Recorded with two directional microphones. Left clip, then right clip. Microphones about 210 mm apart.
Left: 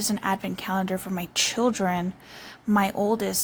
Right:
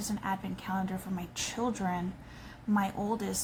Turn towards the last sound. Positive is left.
turn(degrees=45)  # may be behind; listen again after turning